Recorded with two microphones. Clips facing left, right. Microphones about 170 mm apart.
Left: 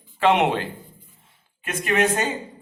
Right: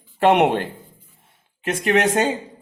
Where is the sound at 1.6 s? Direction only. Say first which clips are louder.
Right 3 dB; 70° right (ahead or behind).